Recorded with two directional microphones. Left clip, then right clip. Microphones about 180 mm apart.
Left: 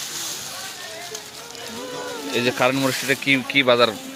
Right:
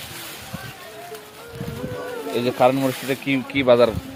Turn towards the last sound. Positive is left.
turn(degrees=-10)  # may be behind; listen again after turning